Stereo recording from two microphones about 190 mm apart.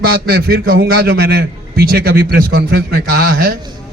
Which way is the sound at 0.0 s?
55° right (ahead or behind).